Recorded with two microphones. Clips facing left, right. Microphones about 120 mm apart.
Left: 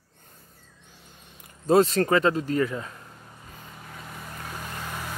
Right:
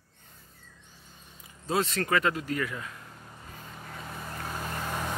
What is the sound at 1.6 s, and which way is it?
Speech, 40° left (ahead or behind).